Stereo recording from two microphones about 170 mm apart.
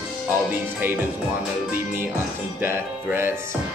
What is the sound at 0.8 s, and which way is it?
Music, 10° right (ahead or behind).